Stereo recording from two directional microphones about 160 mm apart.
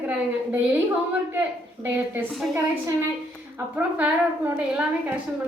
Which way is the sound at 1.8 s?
10° right (ahead or behind).